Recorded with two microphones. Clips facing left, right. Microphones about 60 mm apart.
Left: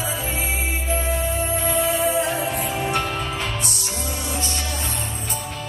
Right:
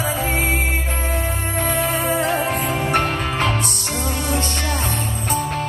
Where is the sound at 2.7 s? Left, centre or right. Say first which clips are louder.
Right 4 dB; right.